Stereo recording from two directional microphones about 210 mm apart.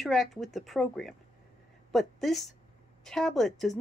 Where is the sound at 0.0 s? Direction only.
Centre (ahead or behind).